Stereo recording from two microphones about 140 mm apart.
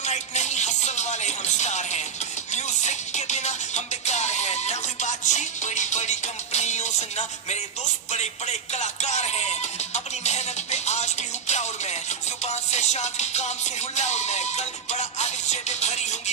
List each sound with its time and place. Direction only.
0.0 s music: 55° left (ahead or behind)